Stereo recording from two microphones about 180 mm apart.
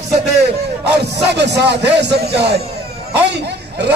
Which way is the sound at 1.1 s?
70° right (ahead or behind).